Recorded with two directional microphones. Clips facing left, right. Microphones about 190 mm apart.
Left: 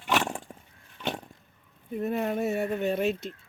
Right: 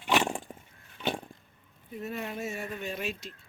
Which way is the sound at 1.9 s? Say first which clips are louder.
Left 8 dB; 50° left (ahead or behind).